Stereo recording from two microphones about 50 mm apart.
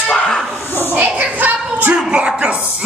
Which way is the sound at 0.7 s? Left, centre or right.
Left.